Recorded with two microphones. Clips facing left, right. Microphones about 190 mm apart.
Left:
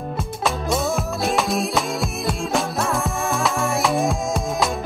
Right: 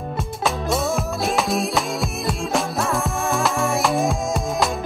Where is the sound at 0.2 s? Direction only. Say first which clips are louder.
Right 1 dB; centre (ahead or behind).